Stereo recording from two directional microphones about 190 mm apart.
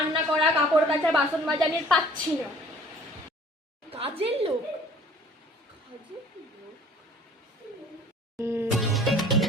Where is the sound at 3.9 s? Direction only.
30° right (ahead or behind).